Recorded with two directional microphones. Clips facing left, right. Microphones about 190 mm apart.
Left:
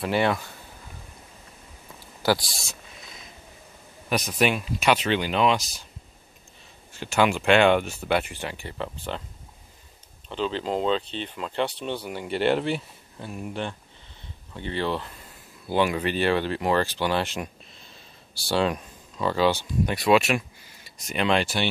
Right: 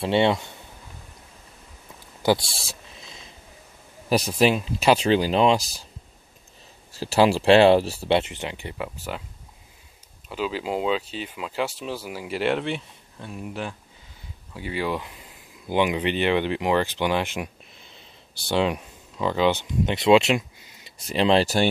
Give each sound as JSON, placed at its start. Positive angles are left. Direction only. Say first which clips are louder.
{"t": 0.0, "sound": "speech", "louder": "right 3 dB", "side_deg": -25}
{"t": 2.2, "sound": "a sound", "louder": "right 2 dB", "side_deg": -25}
{"t": 4.1, "sound": "speech", "louder": "right 4 dB", "side_deg": -30}
{"t": 6.9, "sound": "speech", "louder": "right 3 dB", "side_deg": -35}
{"t": 10.2, "sound": "speech", "louder": "even", "side_deg": -5}
{"t": 18.5, "sound": "speech", "louder": "right 1 dB", "side_deg": -15}
{"t": 21.0, "sound": "speech", "louder": "right 4 dB", "side_deg": -30}